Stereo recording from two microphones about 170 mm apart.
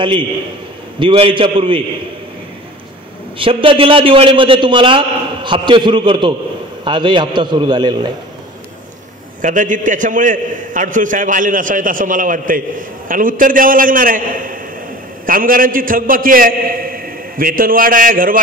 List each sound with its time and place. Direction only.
0.9 s a man's voice: 30° right (ahead or behind)
3.3 s a man's voice: 30° right (ahead or behind)
9.4 s a man's voice: 50° right (ahead or behind)